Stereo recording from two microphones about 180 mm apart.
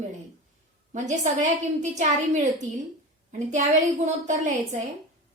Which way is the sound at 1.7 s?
40° right (ahead or behind).